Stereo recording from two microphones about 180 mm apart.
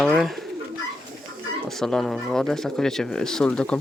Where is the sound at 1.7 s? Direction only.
5° left (ahead or behind).